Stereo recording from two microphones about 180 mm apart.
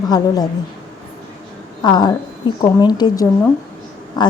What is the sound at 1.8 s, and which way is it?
Speech, 25° left (ahead or behind).